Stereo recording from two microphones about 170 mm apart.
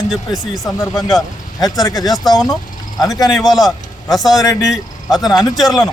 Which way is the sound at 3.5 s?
Centre (ahead or behind).